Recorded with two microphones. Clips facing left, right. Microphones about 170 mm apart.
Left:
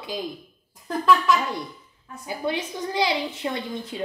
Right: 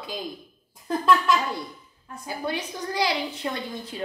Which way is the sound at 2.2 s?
20° left (ahead or behind).